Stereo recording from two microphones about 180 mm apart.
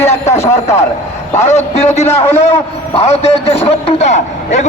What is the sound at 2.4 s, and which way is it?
A man's voice, 35° left (ahead or behind).